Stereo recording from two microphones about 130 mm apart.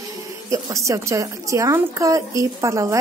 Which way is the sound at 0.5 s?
25° right (ahead or behind).